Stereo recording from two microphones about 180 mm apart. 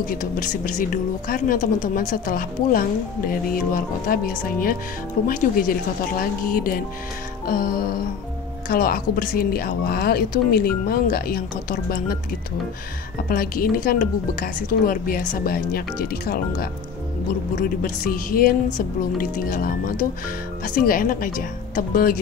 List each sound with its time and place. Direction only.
0.0 s speech: 50° left (ahead or behind)
13.3 s speech: 55° left (ahead or behind)